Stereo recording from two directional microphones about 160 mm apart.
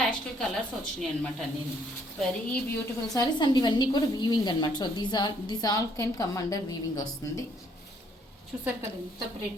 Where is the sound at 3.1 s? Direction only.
25° left (ahead or behind).